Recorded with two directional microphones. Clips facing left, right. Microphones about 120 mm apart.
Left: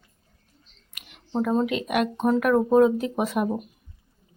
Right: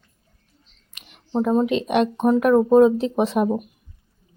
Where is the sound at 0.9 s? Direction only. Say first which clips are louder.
Even; 25° right (ahead or behind).